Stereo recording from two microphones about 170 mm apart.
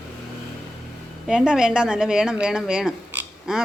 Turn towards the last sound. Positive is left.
turn(degrees=-5)  # may be behind; listen again after turning